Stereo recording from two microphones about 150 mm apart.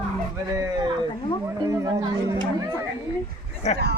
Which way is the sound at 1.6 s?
25° right (ahead or behind).